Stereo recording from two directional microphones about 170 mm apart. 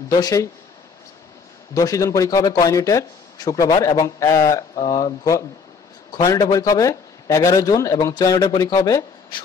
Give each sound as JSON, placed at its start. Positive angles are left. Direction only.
{"t": 0.1, "sound": "speech", "side_deg": 20}
{"t": 1.8, "sound": "speech", "side_deg": 20}